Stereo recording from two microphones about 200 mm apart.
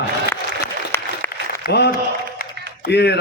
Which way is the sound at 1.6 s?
55° left (ahead or behind).